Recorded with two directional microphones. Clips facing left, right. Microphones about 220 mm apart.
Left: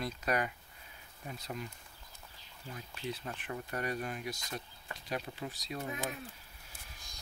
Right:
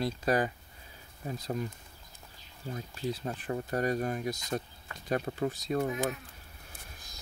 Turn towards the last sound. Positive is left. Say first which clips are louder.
# right 9 dB
turn(degrees=-50)  # may be behind; listen again after turning